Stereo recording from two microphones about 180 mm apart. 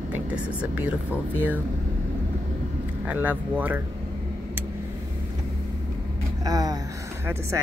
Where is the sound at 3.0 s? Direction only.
10° right (ahead or behind).